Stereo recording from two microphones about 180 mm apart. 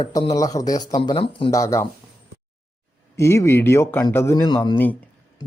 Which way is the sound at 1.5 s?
15° left (ahead or behind).